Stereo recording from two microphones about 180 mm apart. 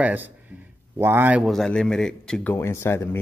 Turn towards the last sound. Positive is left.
turn(degrees=15)  # may be behind; listen again after turning